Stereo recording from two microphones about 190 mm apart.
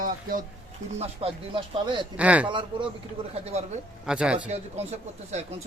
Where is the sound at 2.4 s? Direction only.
25° right (ahead or behind).